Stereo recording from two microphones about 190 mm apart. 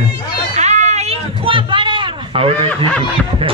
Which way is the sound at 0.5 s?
35° right (ahead or behind).